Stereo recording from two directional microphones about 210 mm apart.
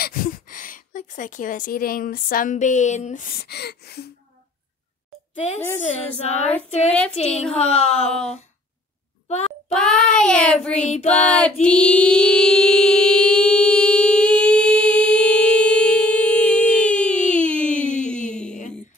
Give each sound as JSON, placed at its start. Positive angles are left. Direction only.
{"t": 0.0, "sound": "speech", "side_deg": 40}
{"t": 6.2, "sound": "a woman's voice", "side_deg": 30}
{"t": 8.1, "sound": "child singing", "side_deg": 5}
{"t": 9.7, "sound": "child singing", "side_deg": 5}
{"t": 10.8, "sound": "a woman's voice", "side_deg": 30}
{"t": 11.1, "sound": "child singing", "side_deg": 5}
{"t": 11.6, "sound": "a sound", "side_deg": 5}